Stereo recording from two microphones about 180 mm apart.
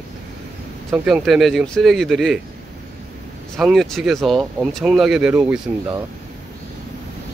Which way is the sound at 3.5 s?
Centre (ahead or behind).